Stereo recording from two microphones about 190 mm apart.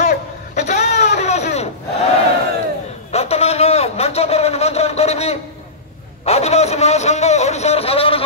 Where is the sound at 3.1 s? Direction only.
35° left (ahead or behind).